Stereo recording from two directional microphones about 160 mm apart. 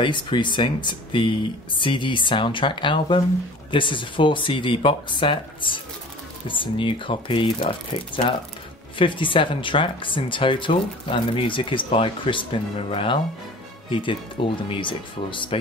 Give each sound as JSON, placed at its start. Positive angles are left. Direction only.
{"t": 0.0, "sound": "speech", "side_deg": 30}